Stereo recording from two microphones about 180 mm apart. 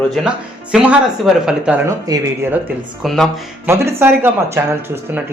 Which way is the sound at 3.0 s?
Centre (ahead or behind).